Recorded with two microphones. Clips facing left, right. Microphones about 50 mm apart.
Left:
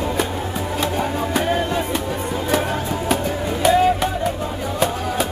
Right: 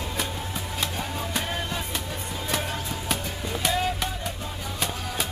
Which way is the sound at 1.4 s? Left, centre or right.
Left.